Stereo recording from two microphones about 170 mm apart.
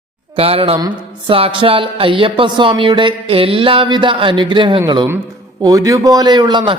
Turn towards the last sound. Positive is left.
turn(degrees=-25)  # may be behind; listen again after turning